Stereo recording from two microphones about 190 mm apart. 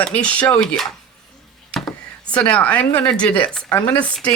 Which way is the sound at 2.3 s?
5° left (ahead or behind).